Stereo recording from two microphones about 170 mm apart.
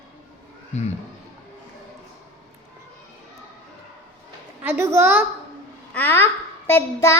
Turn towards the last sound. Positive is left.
turn(degrees=15)  # may be behind; listen again after turning